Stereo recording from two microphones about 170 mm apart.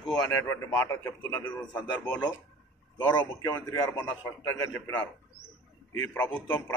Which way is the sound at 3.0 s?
25° left (ahead or behind).